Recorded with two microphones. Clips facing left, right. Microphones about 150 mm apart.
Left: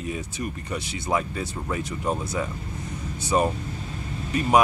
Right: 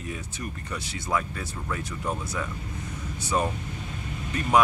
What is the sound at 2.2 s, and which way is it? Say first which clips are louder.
Speech: left 4 dB; 30° left (ahead or behind).